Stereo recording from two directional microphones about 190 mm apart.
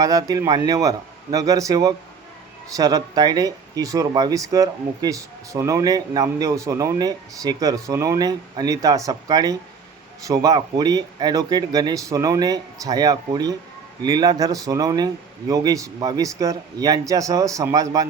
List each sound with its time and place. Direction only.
0.0 s speech: 20° right (ahead or behind)